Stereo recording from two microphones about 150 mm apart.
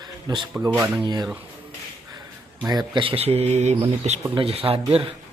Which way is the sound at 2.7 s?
30° right (ahead or behind).